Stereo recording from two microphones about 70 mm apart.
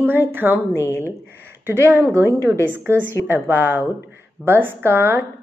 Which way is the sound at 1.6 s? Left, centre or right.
Right.